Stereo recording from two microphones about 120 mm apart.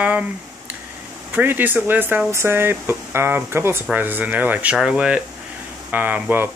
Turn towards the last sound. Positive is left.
turn(degrees=-15)  # may be behind; listen again after turning